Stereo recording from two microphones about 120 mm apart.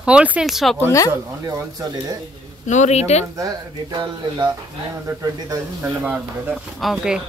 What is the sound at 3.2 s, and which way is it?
Speech, 30° right (ahead or behind).